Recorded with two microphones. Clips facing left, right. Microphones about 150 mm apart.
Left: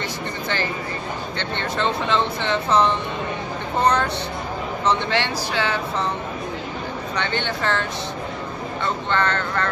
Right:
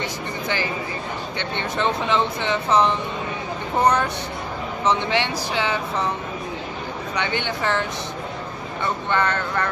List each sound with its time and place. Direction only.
1.4 s speech: 15° right (ahead or behind)
7.2 s speech: 15° right (ahead or behind)
8.8 s speech: 15° right (ahead or behind)